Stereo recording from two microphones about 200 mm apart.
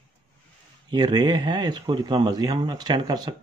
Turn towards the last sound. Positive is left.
turn(degrees=-20)  # may be behind; listen again after turning